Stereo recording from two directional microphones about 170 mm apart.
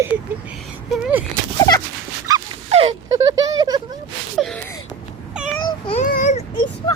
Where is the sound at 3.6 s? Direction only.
25° right (ahead or behind).